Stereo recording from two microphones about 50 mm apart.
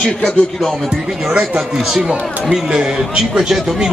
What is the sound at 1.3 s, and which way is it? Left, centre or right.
Speech, right.